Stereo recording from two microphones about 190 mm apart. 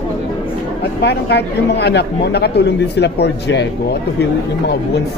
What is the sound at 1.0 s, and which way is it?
Speech, 60° left (ahead or behind).